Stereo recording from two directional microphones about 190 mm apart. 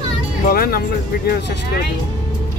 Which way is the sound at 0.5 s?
50° left (ahead or behind).